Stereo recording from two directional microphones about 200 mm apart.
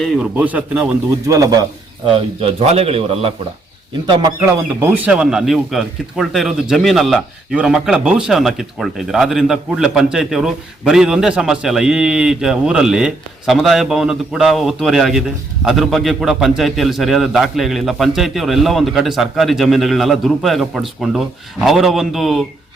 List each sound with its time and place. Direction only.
0.0 s speech: centre (ahead or behind)
1.3 s a man's voice: 20° right (ahead or behind)
4.8 s speech: 5° right (ahead or behind)